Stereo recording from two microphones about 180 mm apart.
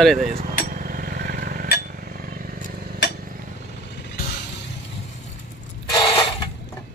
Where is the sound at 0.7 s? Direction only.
50° right (ahead or behind).